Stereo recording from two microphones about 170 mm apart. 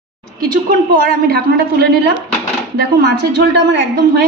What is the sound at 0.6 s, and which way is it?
Speech, 55° right (ahead or behind).